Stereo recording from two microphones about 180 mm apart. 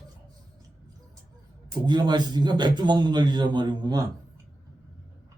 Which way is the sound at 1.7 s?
25° right (ahead or behind).